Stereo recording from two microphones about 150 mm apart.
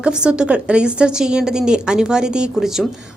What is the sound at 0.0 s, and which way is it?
A woman's voice, 5° right (ahead or behind).